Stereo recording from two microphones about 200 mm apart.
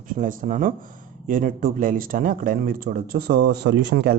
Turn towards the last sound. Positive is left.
turn(degrees=-55)  # may be behind; listen again after turning